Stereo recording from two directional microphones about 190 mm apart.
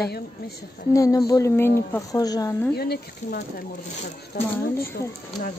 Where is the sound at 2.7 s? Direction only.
55° left (ahead or behind).